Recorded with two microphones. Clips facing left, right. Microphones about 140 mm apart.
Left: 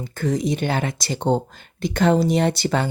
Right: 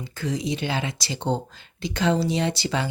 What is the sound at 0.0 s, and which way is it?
A woman's voice, 50° left (ahead or behind).